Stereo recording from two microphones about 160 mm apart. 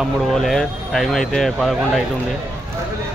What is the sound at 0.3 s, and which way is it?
Speech, centre (ahead or behind).